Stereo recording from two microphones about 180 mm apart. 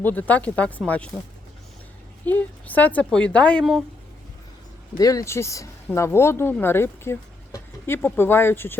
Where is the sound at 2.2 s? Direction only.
10° left (ahead or behind).